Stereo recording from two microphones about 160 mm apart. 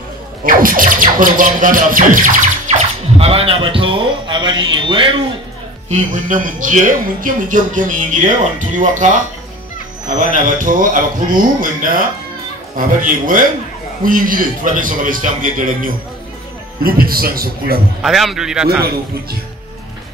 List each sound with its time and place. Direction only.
0.4 s speech: 60° right (ahead or behind)
3.2 s a man's voice: 35° right (ahead or behind)
5.9 s a man's voice: 50° right (ahead or behind); by 17.7 s 65° right (ahead or behind)
18.0 s a man's voice: centre (ahead or behind)